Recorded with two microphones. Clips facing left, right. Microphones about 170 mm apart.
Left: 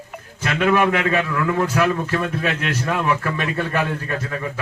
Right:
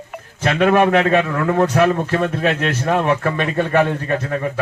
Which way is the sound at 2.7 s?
30° right (ahead or behind).